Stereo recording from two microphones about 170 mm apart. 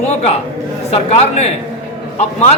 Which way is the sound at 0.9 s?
40° left (ahead or behind).